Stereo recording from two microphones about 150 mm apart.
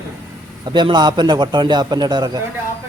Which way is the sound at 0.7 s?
30° right (ahead or behind).